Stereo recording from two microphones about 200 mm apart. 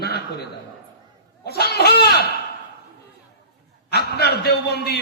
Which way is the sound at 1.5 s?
55° left (ahead or behind).